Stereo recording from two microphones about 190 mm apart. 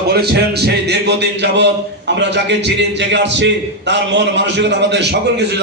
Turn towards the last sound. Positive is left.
turn(degrees=-65)  # may be behind; listen again after turning